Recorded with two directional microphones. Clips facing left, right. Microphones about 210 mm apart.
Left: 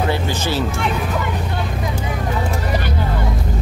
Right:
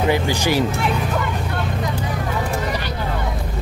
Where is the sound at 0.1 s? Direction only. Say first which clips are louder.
Right 2 dB; 15° right (ahead or behind).